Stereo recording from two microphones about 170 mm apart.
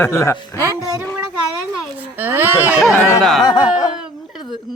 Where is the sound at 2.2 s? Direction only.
10° right (ahead or behind).